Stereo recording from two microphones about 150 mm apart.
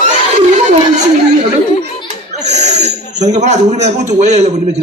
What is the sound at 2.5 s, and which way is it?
A man's voice, 50° right (ahead or behind).